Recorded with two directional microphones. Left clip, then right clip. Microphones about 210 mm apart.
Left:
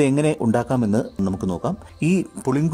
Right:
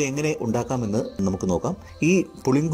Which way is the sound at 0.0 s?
15° left (ahead or behind).